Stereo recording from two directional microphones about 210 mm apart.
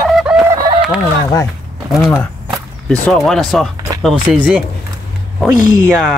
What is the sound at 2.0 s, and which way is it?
Speech, centre (ahead or behind).